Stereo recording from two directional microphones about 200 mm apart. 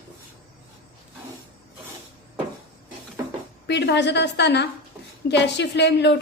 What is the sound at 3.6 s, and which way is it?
A woman's voice, 55° left (ahead or behind).